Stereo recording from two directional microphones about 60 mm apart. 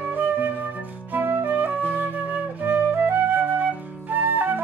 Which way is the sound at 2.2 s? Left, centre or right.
Right.